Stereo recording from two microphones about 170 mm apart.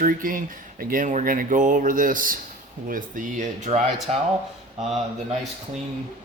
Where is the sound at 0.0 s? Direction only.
55° right (ahead or behind).